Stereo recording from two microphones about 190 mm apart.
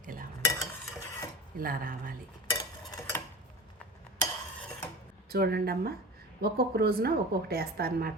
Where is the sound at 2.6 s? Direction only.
20° left (ahead or behind).